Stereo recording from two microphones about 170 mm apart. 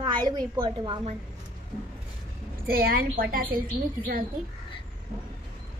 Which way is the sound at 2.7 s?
65° right (ahead or behind).